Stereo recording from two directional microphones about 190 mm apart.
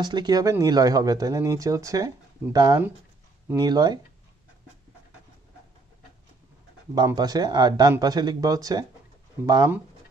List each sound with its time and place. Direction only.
0.0 s speech: 20° right (ahead or behind)
7.0 s speech: 20° right (ahead or behind)